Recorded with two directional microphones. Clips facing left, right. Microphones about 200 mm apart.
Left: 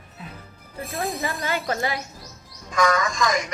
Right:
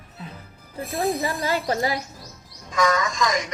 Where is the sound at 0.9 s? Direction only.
30° right (ahead or behind).